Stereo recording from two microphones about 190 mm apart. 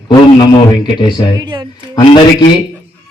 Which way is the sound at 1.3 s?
20° right (ahead or behind).